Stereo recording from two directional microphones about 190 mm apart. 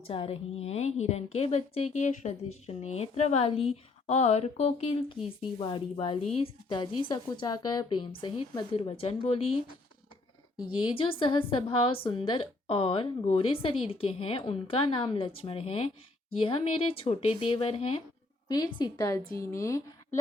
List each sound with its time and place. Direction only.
0.1 s a woman's voice: 30° left (ahead or behind)
10.6 s a woman's voice: 25° left (ahead or behind)